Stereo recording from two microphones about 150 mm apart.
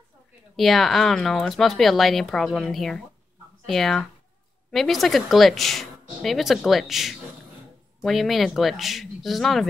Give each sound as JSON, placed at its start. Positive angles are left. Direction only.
{"t": 0.6, "sound": "speech", "side_deg": 0}